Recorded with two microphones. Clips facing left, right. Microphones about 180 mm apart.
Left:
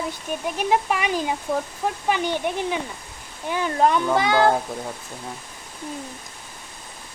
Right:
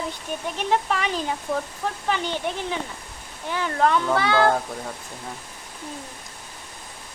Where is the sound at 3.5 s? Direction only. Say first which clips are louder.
Left 2 dB; 15° left (ahead or behind).